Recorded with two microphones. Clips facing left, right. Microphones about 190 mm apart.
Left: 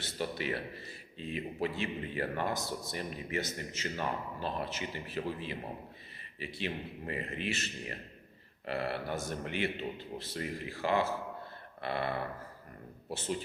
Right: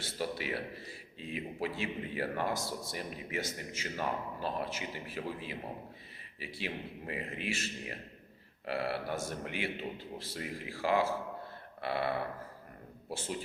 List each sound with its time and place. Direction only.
0.0 s speech: 5° right (ahead or behind)